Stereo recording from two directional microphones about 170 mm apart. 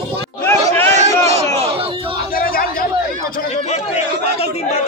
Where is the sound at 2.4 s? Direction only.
60° left (ahead or behind).